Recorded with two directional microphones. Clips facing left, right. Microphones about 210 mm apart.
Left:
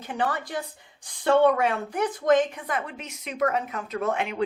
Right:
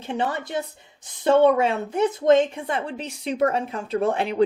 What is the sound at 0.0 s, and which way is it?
A woman's voice, 25° right (ahead or behind).